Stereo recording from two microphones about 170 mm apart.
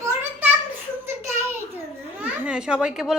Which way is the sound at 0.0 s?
15° right (ahead or behind).